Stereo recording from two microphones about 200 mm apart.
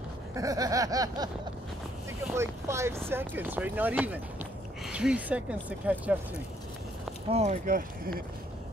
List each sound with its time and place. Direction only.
0.3 s speech: 15° right (ahead or behind)
2.3 s speech: 15° right (ahead or behind)
7.2 s speech: 30° right (ahead or behind)